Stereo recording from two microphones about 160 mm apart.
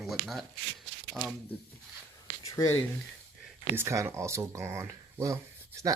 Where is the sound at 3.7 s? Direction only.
15° right (ahead or behind).